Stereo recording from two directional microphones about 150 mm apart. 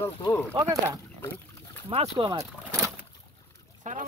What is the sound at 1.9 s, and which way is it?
Speech, 35° right (ahead or behind).